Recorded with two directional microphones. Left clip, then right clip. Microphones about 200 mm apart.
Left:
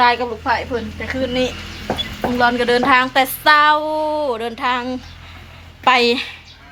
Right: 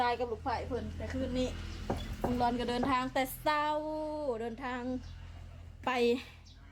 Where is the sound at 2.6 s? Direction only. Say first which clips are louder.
Left 19 dB; 5° right (ahead or behind).